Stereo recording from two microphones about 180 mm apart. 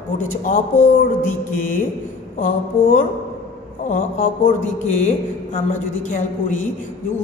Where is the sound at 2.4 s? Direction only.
45° left (ahead or behind).